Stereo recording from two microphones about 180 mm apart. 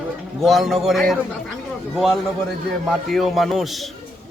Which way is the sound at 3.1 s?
Centre (ahead or behind).